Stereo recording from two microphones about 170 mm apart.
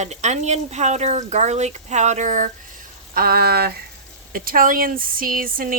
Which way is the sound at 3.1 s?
60° right (ahead or behind).